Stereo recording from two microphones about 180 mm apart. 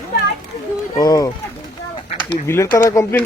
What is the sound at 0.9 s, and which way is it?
Speech, 20° left (ahead or behind).